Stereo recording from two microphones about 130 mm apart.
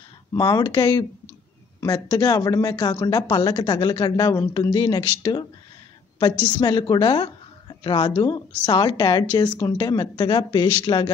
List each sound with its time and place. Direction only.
0.3 s a woman's voice: 30° left (ahead or behind)
6.6 s a woman's voice: 35° left (ahead or behind)